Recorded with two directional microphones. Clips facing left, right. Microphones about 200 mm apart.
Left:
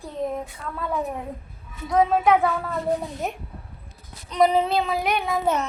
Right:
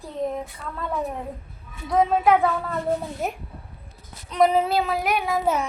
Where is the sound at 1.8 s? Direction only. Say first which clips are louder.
Even; centre (ahead or behind).